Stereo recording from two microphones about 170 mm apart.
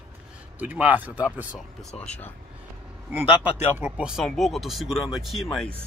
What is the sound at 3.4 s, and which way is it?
Speech, 10° right (ahead or behind).